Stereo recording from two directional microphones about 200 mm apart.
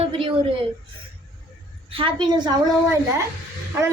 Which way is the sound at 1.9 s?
25° right (ahead or behind).